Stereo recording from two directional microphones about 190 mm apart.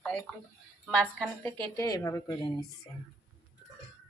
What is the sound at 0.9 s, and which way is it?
A woman's voice, 5° left (ahead or behind).